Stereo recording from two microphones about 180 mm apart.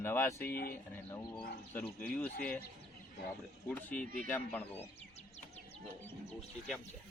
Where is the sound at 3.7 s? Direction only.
10° left (ahead or behind).